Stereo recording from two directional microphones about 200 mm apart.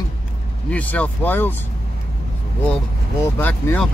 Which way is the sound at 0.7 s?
10° left (ahead or behind).